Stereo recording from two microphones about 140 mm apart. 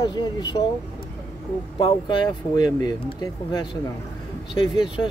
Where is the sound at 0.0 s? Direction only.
30° left (ahead or behind).